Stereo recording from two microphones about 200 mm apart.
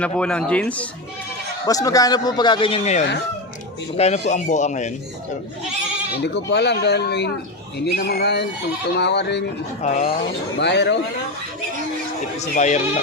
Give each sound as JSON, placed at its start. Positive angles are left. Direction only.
{"t": 0.0, "sound": "speech", "side_deg": 5}
{"t": 1.6, "sound": "a man's voice", "side_deg": 20}
{"t": 6.2, "sound": "speech", "side_deg": 60}
{"t": 9.8, "sound": "speech", "side_deg": 35}
{"t": 10.6, "sound": "speech", "side_deg": 60}
{"t": 12.4, "sound": "speech", "side_deg": 35}